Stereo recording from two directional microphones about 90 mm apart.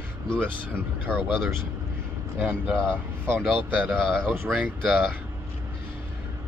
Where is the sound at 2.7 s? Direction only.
10° left (ahead or behind).